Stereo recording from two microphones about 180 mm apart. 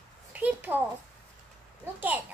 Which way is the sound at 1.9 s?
10° right (ahead or behind).